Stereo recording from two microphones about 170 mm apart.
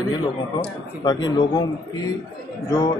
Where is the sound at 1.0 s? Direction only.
25° left (ahead or behind).